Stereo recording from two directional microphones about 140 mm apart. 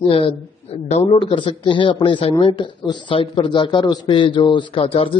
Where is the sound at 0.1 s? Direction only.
40° left (ahead or behind).